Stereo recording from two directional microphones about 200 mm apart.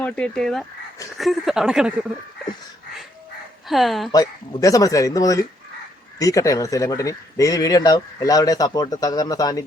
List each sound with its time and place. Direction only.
0.0 s speech: 5° left (ahead or behind)
3.7 s speech: centre (ahead or behind)
4.1 s speech: 20° left (ahead or behind)